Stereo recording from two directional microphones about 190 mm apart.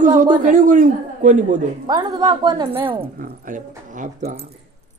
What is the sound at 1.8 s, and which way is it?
A woman's voice, 20° right (ahead or behind).